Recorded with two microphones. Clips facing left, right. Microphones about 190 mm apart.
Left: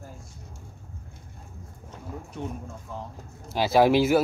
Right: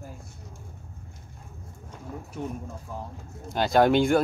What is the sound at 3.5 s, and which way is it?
Speech, 5° left (ahead or behind).